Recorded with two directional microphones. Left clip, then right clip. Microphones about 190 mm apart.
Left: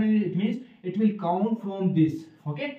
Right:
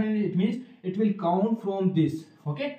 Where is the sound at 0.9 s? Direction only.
10° left (ahead or behind).